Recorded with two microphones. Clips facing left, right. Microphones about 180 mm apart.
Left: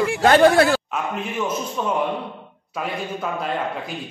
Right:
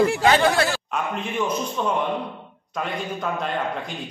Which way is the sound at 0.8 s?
Centre (ahead or behind).